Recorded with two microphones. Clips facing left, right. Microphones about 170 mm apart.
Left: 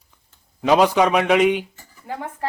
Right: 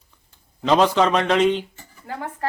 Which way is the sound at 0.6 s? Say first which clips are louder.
Left 1 dB; 10° left (ahead or behind).